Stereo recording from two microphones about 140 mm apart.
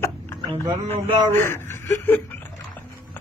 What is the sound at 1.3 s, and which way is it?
Speech, 15° left (ahead or behind).